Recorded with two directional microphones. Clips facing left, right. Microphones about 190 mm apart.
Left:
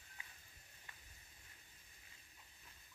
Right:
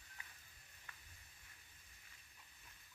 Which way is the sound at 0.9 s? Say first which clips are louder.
Right 1 dB; 20° left (ahead or behind).